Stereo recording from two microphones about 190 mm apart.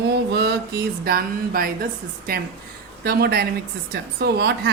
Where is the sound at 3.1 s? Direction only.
55° right (ahead or behind).